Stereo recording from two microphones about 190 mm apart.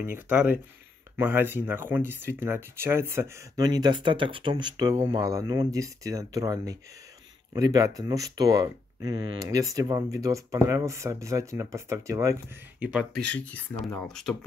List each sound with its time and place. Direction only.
0.0 s speech: 10° right (ahead or behind)
13.2 s speech: 5° left (ahead or behind)